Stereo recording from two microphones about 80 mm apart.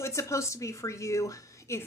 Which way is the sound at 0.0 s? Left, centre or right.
Left.